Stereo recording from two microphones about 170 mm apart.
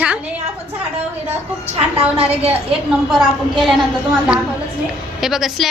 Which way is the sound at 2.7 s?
Centre (ahead or behind).